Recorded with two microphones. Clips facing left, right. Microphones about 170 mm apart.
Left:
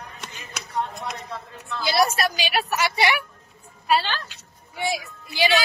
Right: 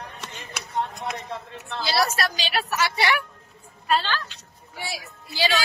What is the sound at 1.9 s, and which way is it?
A woman's voice, 15° left (ahead or behind).